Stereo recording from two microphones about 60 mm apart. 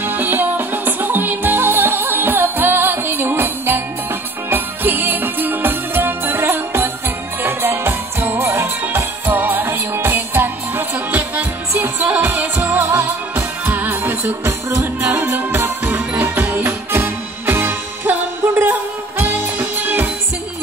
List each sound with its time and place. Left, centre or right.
0.0 s music: right
8.4 s music: right
9.2 s music: right